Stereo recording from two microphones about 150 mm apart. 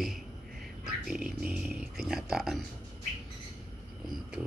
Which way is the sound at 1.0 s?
5° right (ahead or behind).